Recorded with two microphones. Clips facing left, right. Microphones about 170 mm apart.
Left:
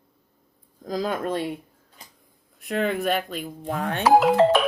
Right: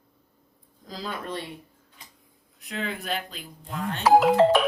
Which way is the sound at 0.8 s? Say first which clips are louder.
Left 8 dB; 50° left (ahead or behind).